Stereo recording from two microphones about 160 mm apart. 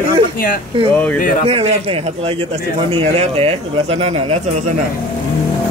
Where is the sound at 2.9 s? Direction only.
35° right (ahead or behind).